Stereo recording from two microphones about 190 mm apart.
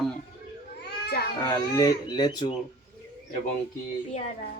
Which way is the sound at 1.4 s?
20° left (ahead or behind).